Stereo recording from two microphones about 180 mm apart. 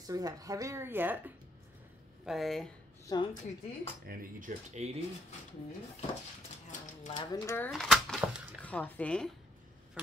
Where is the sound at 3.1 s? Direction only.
20° left (ahead or behind).